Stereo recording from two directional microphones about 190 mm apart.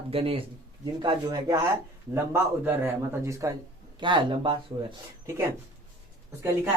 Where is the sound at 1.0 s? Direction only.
20° right (ahead or behind).